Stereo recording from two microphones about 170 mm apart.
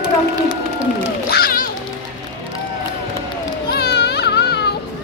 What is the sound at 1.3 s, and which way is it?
Music, 60° left (ahead or behind).